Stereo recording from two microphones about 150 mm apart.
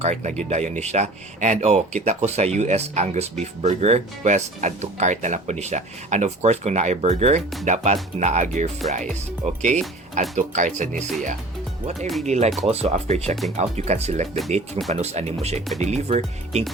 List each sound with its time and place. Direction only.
0.0 s speech: 50° right (ahead or behind)
11.9 s speech: centre (ahead or behind)
12.2 s speech: 50° right (ahead or behind)